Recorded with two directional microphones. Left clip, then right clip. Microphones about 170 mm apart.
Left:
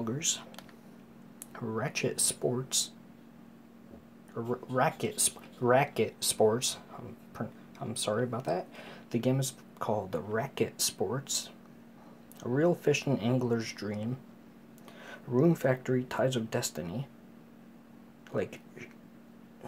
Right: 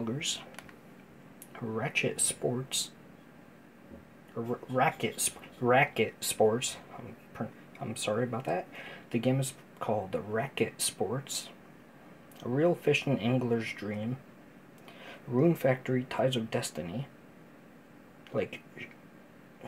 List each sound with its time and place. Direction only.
1.5 s speech: 10° left (ahead or behind)
4.4 s speech: 15° left (ahead or behind)
18.3 s a sound: 5° left (ahead or behind)